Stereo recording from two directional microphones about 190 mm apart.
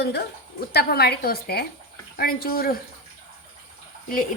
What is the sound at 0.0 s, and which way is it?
A woman's voice, 60° left (ahead or behind).